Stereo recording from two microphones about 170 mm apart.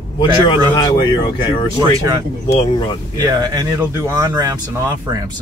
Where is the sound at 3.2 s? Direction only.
20° right (ahead or behind).